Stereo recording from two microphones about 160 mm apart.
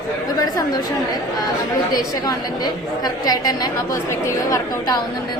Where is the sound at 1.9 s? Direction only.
25° left (ahead or behind).